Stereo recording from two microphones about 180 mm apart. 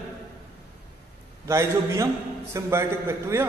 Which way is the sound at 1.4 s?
15° right (ahead or behind).